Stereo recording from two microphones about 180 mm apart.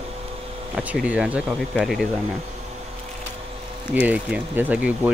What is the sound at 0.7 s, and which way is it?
Speech, 10° right (ahead or behind).